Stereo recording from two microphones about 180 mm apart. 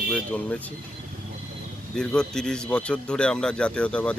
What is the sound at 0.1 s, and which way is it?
Speech, 5° left (ahead or behind).